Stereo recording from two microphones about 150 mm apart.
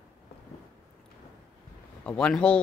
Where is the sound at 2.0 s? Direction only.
5° left (ahead or behind).